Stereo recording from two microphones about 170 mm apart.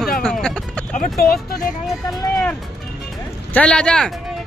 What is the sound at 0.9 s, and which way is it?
Speech, 55° left (ahead or behind).